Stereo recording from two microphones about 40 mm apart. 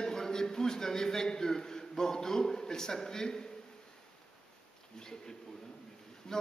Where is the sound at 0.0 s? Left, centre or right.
Centre.